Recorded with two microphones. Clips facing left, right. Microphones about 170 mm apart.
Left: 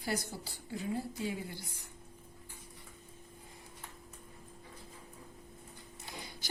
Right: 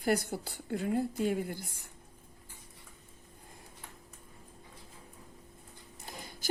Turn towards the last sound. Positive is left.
turn(degrees=-45)  # may be behind; listen again after turning